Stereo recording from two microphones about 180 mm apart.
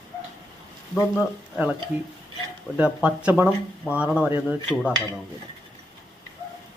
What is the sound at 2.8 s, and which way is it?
Speech, 5° right (ahead or behind).